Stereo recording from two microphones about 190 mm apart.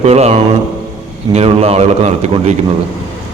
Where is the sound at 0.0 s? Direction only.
35° right (ahead or behind).